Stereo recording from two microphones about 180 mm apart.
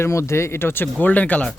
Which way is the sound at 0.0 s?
15° left (ahead or behind).